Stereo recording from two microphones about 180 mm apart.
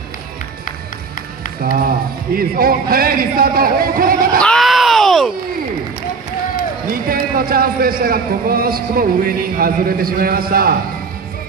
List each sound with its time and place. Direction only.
1.6 s a man's voice: 55° right (ahead or behind)
4.4 s a sound: 5° left (ahead or behind)
6.9 s a man's voice: 55° right (ahead or behind)